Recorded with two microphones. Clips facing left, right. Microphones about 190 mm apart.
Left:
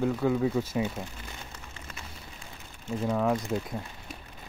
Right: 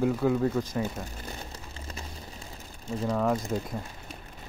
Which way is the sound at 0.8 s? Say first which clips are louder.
Left 1 dB; 40° right (ahead or behind).